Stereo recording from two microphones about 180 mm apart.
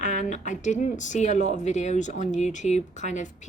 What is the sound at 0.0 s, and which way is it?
A woman's voice, 40° left (ahead or behind).